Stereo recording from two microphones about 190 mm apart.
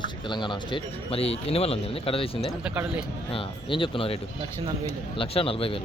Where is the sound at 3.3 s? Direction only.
25° left (ahead or behind).